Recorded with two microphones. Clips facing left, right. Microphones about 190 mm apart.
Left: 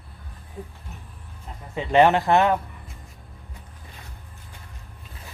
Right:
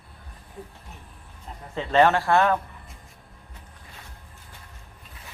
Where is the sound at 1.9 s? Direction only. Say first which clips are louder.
Left 2 dB; 15° left (ahead or behind).